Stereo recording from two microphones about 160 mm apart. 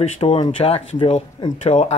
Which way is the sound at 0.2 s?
40° left (ahead or behind).